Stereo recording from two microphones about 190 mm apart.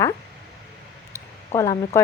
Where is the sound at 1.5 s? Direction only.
15° left (ahead or behind).